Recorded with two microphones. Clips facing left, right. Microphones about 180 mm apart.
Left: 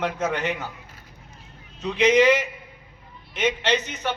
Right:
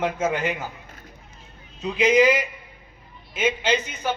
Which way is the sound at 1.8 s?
5° right (ahead or behind).